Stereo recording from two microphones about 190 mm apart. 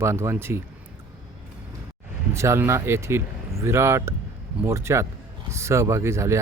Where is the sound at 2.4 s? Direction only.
15° right (ahead or behind).